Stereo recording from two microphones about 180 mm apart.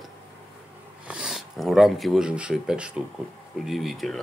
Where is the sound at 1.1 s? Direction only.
5° right (ahead or behind).